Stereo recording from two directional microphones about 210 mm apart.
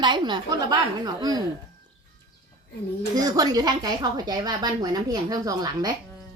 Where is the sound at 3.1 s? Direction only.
15° right (ahead or behind).